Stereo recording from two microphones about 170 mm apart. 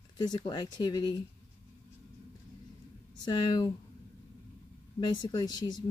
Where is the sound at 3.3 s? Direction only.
25° left (ahead or behind).